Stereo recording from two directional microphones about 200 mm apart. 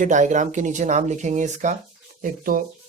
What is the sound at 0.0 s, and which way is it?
Speech, 40° right (ahead or behind).